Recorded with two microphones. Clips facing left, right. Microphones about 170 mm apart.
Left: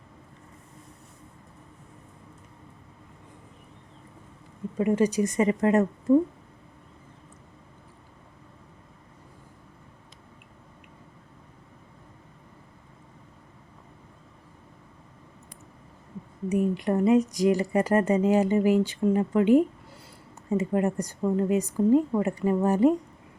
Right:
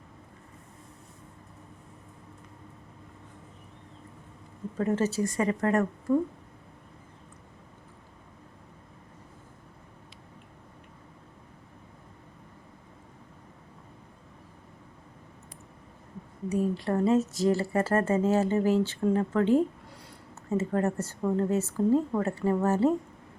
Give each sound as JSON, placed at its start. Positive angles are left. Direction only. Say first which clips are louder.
{"t": 4.8, "sound": "a woman's voice", "louder": "left 4 dB", "side_deg": 10}
{"t": 16.5, "sound": "speech", "louder": "left 3 dB", "side_deg": 20}